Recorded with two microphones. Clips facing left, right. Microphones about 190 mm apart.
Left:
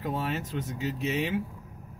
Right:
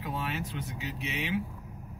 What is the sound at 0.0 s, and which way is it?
Speech, 45° left (ahead or behind).